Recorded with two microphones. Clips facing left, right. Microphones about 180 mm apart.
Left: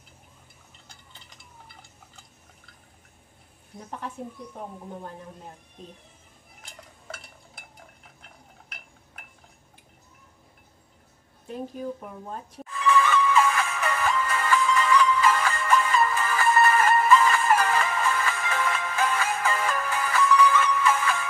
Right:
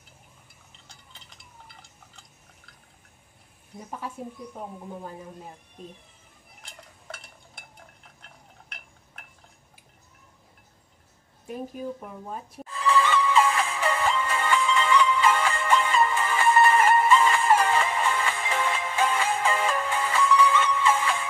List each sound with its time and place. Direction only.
3.9 s speech: 5° right (ahead or behind)
6.6 s stir: centre (ahead or behind)
12.0 s speech: 10° right (ahead or behind)
12.6 s music: 30° right (ahead or behind)